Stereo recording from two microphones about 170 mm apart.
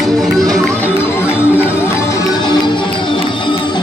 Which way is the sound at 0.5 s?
5° left (ahead or behind).